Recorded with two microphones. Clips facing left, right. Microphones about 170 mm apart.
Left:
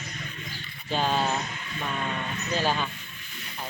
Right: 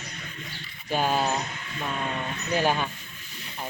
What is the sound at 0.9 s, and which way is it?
Speech, 10° right (ahead or behind).